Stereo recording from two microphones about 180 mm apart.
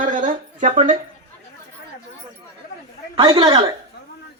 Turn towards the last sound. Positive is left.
turn(degrees=-25)  # may be behind; listen again after turning